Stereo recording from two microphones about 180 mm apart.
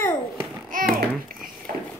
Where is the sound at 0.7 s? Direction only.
50° right (ahead or behind).